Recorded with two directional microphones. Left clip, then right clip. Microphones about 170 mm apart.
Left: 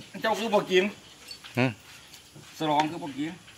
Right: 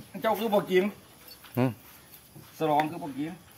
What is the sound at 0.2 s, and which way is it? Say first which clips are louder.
Speech: left 1 dB; 70° right (ahead or behind).